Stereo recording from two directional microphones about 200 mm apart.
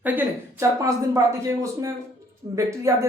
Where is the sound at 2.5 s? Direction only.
15° right (ahead or behind).